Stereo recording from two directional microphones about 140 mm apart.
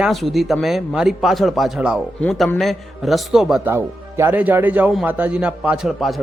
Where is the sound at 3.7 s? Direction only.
15° right (ahead or behind).